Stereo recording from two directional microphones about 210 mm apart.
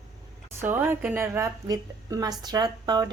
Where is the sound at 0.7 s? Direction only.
10° right (ahead or behind).